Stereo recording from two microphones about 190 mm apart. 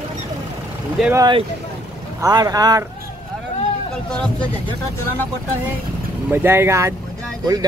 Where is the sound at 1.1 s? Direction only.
25° right (ahead or behind).